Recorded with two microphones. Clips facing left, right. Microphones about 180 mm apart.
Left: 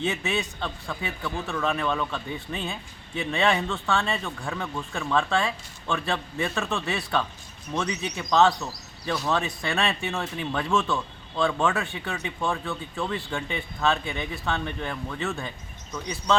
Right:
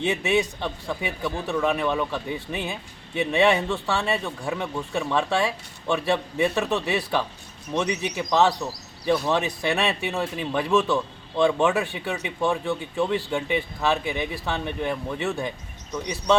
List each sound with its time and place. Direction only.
0.0 s speech: 15° right (ahead or behind)